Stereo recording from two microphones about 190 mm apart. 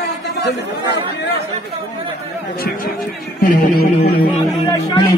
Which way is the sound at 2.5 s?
55° left (ahead or behind).